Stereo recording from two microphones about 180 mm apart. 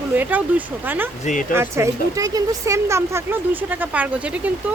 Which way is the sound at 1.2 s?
45° left (ahead or behind).